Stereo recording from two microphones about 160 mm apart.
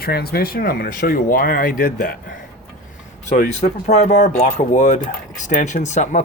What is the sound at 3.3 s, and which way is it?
Speech, 45° left (ahead or behind).